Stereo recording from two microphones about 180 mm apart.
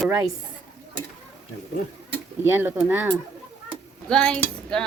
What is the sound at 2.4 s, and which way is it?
Speech, 10° right (ahead or behind).